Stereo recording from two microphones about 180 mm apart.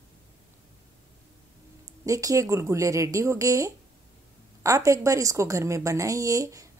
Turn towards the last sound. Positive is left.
turn(degrees=-20)  # may be behind; listen again after turning